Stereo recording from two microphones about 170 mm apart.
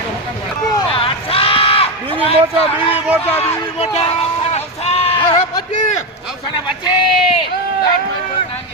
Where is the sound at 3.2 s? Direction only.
10° left (ahead or behind).